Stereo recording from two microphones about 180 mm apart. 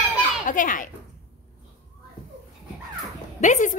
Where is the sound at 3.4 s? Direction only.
45° left (ahead or behind).